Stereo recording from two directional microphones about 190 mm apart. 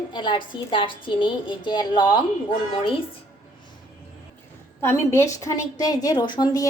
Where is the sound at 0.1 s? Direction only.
25° left (ahead or behind).